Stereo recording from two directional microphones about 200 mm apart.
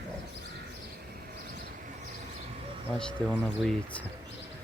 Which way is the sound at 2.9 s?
5° left (ahead or behind).